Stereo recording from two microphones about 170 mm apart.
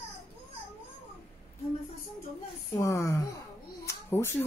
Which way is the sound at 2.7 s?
20° left (ahead or behind).